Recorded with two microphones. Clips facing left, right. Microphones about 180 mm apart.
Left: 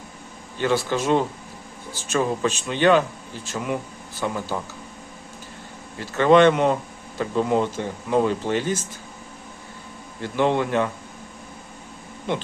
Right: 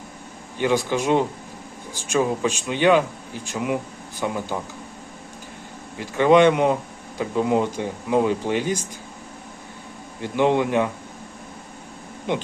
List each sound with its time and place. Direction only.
0.6 s speech: 15° right (ahead or behind)
6.0 s speech: 15° right (ahead or behind)
10.2 s speech: 15° right (ahead or behind)
12.3 s speech: 15° right (ahead or behind)